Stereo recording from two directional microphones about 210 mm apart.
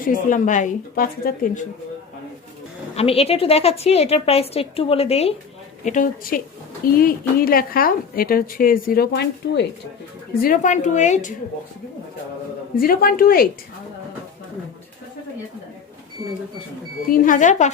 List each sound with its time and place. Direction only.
0.1 s a woman's voice: 40° left (ahead or behind)
2.9 s a woman's voice: 30° left (ahead or behind); by 9.6 s 55° left (ahead or behind)
10.4 s a woman's voice: 40° left (ahead or behind)
12.7 s a woman's voice: 45° left (ahead or behind)
17.1 s a woman's voice: 40° left (ahead or behind)